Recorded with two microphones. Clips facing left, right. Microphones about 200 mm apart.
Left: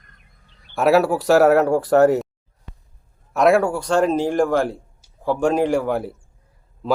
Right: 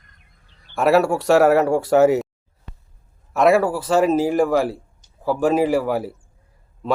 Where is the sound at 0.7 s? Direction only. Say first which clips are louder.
Even; centre (ahead or behind).